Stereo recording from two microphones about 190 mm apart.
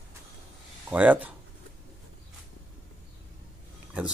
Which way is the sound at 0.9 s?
10° right (ahead or behind).